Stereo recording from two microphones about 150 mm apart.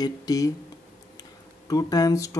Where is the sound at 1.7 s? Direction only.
25° left (ahead or behind).